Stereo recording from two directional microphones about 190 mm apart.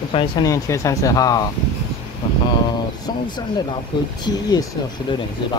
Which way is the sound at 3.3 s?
25° left (ahead or behind).